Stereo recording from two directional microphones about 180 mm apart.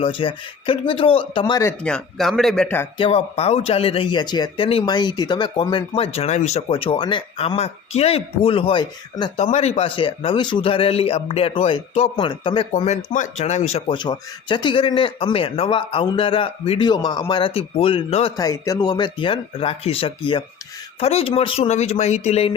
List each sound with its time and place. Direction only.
0.0 s a man's voice: 30° left (ahead or behind)
1.8 s speech: 5° left (ahead or behind)
3.0 s speech: 35° left (ahead or behind)
9.4 s a man's voice: 35° left (ahead or behind)
18.3 s a man's voice: 20° left (ahead or behind); by 22.5 s 35° left (ahead or behind)